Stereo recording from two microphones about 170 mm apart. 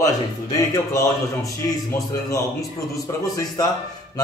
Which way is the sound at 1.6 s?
20° left (ahead or behind).